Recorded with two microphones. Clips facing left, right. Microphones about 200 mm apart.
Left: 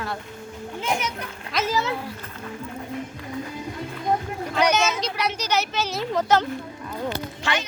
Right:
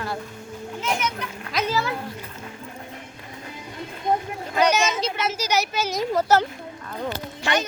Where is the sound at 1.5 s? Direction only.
Centre (ahead or behind).